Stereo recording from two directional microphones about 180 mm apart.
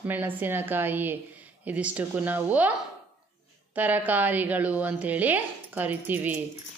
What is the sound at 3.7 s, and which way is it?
A woman's voice, 10° right (ahead or behind).